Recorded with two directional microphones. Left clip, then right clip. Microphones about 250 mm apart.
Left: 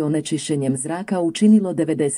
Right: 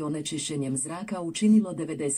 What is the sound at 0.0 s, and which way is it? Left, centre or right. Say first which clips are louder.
Speech: left 9 dB; left.